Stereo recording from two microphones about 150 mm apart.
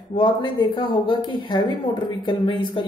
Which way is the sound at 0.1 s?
30° left (ahead or behind).